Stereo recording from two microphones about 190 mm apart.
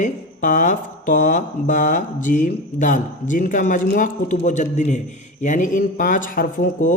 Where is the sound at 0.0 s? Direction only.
40° left (ahead or behind).